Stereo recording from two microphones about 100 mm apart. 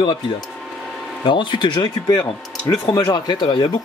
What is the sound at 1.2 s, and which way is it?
Speech, 55° left (ahead or behind).